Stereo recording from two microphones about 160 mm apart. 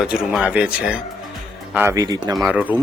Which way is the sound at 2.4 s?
10° right (ahead or behind).